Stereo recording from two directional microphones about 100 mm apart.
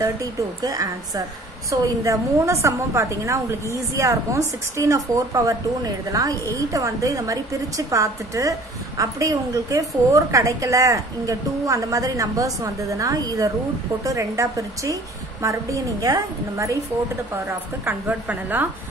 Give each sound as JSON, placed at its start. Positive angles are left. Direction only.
{"t": 0.0, "sound": "a woman's voice", "side_deg": -35}
{"t": 17.5, "sound": "a woman's voice", "side_deg": -25}